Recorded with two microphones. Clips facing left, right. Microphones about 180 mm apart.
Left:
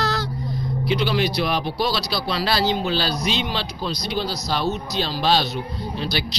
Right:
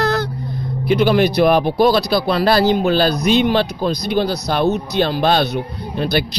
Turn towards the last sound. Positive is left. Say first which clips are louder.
# right 7 dB
turn(degrees=-55)  # may be behind; listen again after turning